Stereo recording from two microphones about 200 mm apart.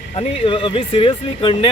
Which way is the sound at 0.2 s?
25° left (ahead or behind).